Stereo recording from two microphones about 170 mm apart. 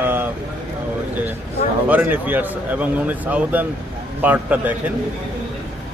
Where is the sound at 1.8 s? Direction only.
10° right (ahead or behind).